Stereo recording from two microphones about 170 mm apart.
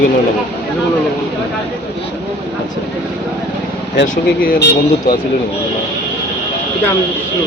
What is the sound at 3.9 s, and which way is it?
Speech, 85° left.